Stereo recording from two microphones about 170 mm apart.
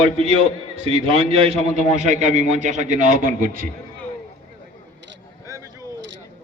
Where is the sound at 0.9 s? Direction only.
35° right (ahead or behind).